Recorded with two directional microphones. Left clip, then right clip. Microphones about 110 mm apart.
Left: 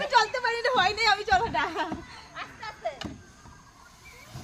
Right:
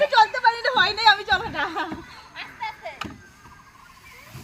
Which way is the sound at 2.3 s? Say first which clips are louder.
Right 6 dB; 15° left (ahead or behind).